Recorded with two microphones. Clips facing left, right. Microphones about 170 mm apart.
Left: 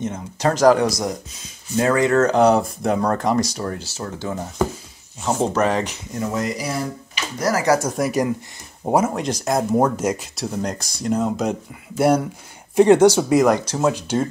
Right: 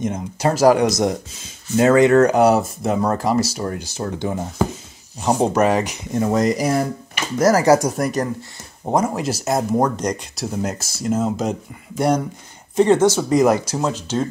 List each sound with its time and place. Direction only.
0.0 s speech: 10° right (ahead or behind)
0.8 s speech: 20° right (ahead or behind); by 3.6 s 5° right (ahead or behind)
3.7 s speech: 15° right (ahead or behind)
6.1 s speech: 40° right (ahead or behind)
8.0 s speech: 10° left (ahead or behind)
12.7 s speech: 10° left (ahead or behind)
13.4 s speech: 5° right (ahead or behind)
13.9 s speech: 10° left (ahead or behind)